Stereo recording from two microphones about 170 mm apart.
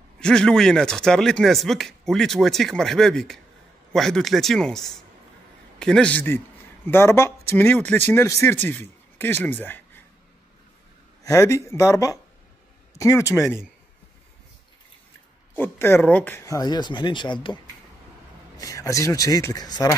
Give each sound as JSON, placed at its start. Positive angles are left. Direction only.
{"t": 0.2, "sound": "speech", "side_deg": 5}
{"t": 11.2, "sound": "speech", "side_deg": 20}
{"t": 15.5, "sound": "speech", "side_deg": 10}
{"t": 18.6, "sound": "speech", "side_deg": 20}